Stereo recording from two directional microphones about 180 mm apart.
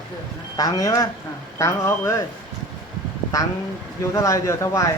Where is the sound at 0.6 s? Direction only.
20° left (ahead or behind).